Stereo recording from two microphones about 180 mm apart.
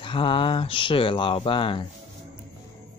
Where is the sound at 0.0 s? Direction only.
30° left (ahead or behind).